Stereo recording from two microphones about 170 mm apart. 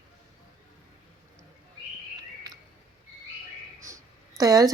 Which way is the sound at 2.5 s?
25° right (ahead or behind).